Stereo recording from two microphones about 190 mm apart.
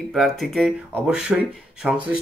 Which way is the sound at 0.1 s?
Centre (ahead or behind).